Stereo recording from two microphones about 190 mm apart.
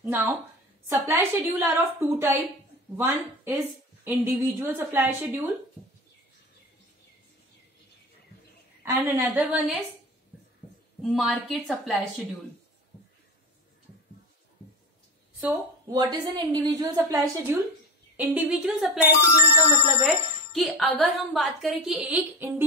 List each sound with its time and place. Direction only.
0.0 s a woman's voice: 10° right (ahead or behind)
8.8 s a woman's voice: 10° right (ahead or behind)
11.0 s speech: centre (ahead or behind)
15.4 s a woman's voice: 20° right (ahead or behind); by 18.9 s 5° right (ahead or behind)
19.9 s speech: centre (ahead or behind)